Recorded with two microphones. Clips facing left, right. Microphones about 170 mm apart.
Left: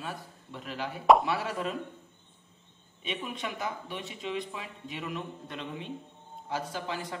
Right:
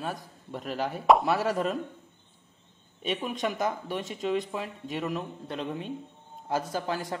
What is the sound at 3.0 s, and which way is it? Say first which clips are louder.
A man's voice: right 6 dB; 45° right (ahead or behind).